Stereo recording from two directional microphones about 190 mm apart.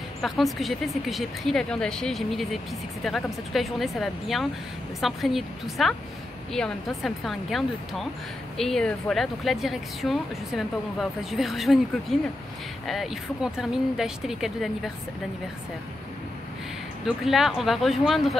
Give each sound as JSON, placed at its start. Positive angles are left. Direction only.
{"t": 0.2, "sound": "speech", "side_deg": 0}
{"t": 17.0, "sound": "speech", "side_deg": 0}